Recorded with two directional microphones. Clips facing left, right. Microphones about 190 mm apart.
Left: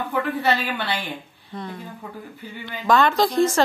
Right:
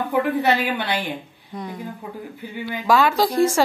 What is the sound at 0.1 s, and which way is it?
A woman's voice, 15° right (ahead or behind).